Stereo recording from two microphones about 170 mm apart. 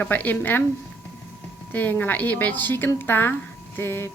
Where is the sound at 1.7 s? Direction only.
10° left (ahead or behind).